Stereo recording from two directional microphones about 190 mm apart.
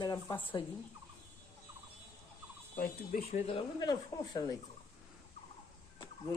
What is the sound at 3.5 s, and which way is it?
Speech, 20° left (ahead or behind).